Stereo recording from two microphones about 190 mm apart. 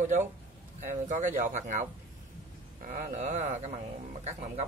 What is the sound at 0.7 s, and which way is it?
Speech, 40° right (ahead or behind).